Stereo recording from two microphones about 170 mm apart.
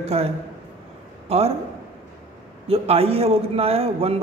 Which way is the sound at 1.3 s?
35° right (ahead or behind).